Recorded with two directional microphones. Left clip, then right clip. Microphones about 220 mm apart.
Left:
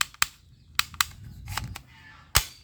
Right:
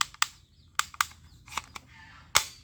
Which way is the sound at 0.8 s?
10° left (ahead or behind).